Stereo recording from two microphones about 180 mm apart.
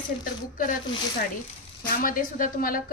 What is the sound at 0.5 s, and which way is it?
Speech, 50° left (ahead or behind).